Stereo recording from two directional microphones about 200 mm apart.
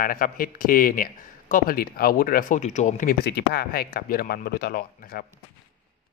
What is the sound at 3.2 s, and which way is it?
A man's voice, 55° left (ahead or behind).